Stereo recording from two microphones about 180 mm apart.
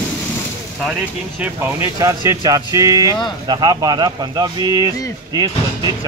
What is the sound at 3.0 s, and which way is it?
Speech, 25° left (ahead or behind).